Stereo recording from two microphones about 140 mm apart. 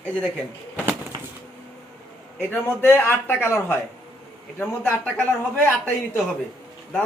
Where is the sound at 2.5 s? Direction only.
15° left (ahead or behind).